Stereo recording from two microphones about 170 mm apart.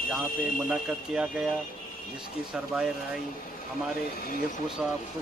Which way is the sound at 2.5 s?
5° right (ahead or behind).